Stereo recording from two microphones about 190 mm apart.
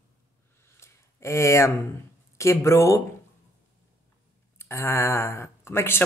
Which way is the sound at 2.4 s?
15° left (ahead or behind).